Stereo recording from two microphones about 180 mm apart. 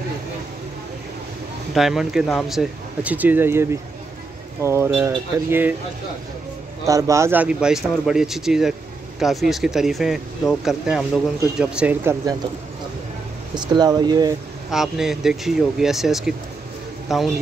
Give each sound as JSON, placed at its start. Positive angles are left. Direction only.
{"t": 1.7, "sound": "speech", "side_deg": 0}
{"t": 6.9, "sound": "speech", "side_deg": -20}
{"t": 13.6, "sound": "speech", "side_deg": -25}
{"t": 14.7, "sound": "speech", "side_deg": 0}